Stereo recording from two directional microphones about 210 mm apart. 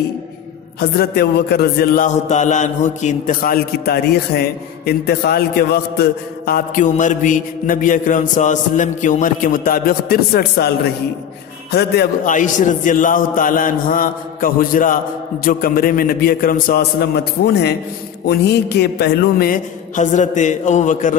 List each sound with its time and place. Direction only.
0.7 s mantra: 50° left (ahead or behind)
11.7 s mantra: 45° left (ahead or behind)
15.4 s a man's voice: 45° left (ahead or behind)
18.2 s mantra: 50° left (ahead or behind)